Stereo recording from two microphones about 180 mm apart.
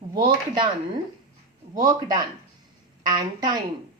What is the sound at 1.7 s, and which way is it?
A woman's voice, 20° right (ahead or behind).